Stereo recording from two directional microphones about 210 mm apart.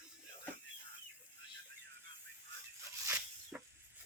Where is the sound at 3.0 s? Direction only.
10° right (ahead or behind).